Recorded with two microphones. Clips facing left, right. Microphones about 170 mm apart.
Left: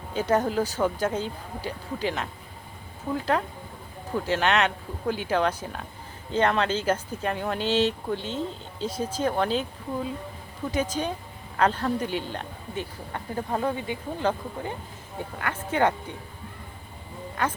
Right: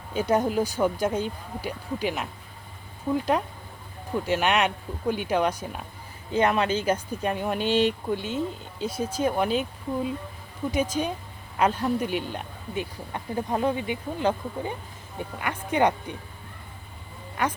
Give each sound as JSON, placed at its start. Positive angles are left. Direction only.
{"t": 0.1, "sound": "speech", "side_deg": -10}
{"t": 4.3, "sound": "speech", "side_deg": -15}